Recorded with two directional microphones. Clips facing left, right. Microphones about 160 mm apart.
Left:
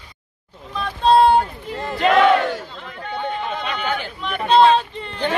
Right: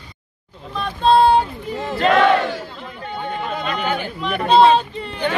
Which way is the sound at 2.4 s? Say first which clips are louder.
Left 1 dB; 10° right (ahead or behind).